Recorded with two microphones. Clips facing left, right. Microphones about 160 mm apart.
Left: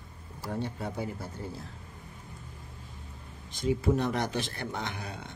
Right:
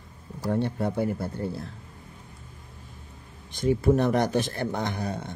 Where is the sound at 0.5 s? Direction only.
60° right (ahead or behind).